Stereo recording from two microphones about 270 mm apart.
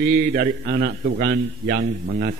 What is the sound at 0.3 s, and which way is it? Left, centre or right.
A man's voice, right.